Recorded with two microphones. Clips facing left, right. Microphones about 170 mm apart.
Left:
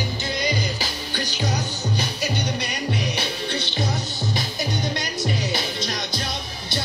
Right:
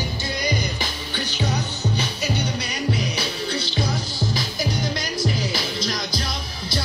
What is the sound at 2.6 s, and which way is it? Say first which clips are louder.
Music: right 1 dB; 60° left (ahead or behind).